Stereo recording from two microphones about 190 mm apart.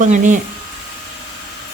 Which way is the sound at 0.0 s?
40° right (ahead or behind).